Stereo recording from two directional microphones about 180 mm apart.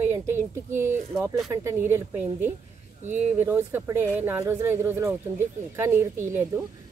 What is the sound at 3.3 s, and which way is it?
Speech, 10° right (ahead or behind).